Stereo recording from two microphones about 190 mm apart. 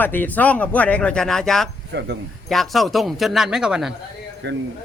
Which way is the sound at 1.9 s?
65° right (ahead or behind).